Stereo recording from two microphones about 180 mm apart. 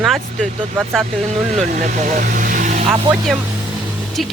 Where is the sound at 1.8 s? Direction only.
45° right (ahead or behind).